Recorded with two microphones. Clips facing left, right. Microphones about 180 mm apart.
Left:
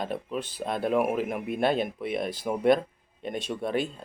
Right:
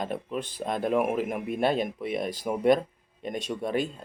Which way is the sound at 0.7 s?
45° right (ahead or behind).